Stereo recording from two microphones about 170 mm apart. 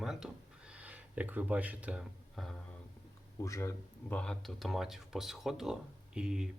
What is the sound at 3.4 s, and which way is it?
Speech, 15° left (ahead or behind).